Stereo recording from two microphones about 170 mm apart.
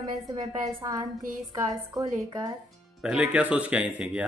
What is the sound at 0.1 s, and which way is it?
Speech, 20° right (ahead or behind).